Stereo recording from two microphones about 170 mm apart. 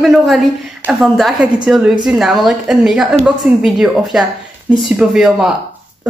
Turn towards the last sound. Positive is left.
turn(degrees=-5)  # may be behind; listen again after turning